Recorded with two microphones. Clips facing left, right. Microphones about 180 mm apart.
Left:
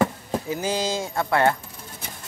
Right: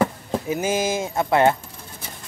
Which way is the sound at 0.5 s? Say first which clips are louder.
Right 4 dB; 20° right (ahead or behind).